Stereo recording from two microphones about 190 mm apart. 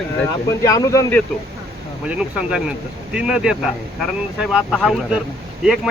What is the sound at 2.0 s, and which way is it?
Speech, 5° right (ahead or behind).